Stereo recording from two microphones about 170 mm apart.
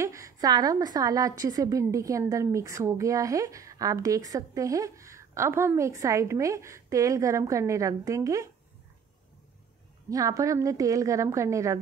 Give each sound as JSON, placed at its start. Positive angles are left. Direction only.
{"t": 0.0, "sound": "a woman's voice", "side_deg": -20}
{"t": 10.0, "sound": "a woman's voice", "side_deg": -20}